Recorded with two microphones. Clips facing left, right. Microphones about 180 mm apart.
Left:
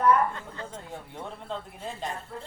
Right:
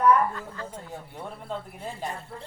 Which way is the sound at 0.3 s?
25° left (ahead or behind).